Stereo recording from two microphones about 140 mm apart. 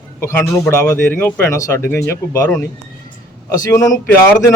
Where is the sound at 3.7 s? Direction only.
25° left (ahead or behind).